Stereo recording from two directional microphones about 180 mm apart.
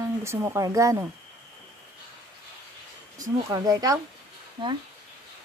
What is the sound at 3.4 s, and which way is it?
Speech, 20° right (ahead or behind).